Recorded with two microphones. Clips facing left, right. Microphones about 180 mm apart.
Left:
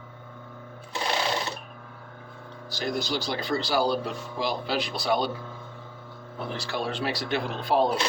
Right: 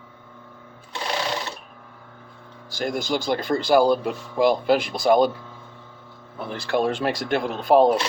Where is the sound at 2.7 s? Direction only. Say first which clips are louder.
Right 4 dB; 50° right (ahead or behind).